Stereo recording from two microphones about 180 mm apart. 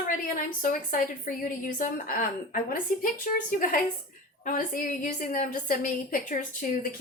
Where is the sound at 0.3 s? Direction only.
50° left (ahead or behind).